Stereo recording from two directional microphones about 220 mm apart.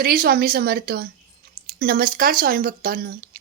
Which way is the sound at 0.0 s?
40° right (ahead or behind).